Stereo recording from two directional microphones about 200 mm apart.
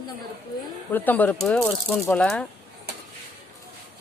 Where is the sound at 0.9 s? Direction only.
10° left (ahead or behind).